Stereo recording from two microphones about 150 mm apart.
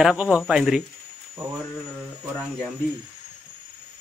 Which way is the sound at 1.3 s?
20° right (ahead or behind).